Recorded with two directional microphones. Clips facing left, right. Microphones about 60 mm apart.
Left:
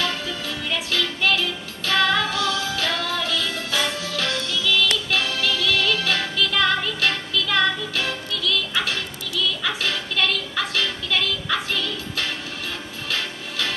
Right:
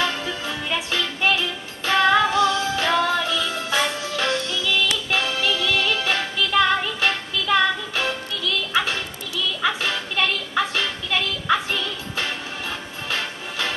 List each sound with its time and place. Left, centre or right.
0.0 s music: right